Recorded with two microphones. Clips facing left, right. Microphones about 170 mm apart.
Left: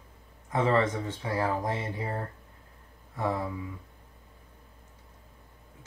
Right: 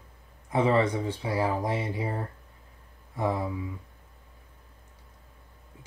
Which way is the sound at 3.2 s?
15° right (ahead or behind).